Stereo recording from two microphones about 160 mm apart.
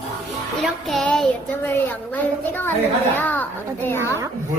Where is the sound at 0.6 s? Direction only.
Centre (ahead or behind).